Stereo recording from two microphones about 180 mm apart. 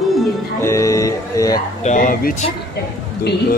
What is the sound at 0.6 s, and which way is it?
Music, 15° left (ahead or behind).